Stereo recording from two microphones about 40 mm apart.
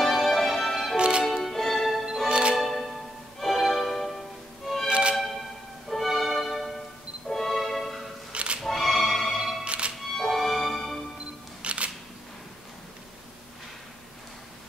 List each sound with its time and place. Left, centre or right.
0.0 s music: centre
0.9 s music: right
1.2 s music: centre
2.0 s music: right
2.5 s music: centre
4.8 s music: right
6.0 s music: centre
8.3 s music: right
8.6 s music: centre
9.7 s music: right
10.1 s music: centre
11.6 s single-lens reflex camera: right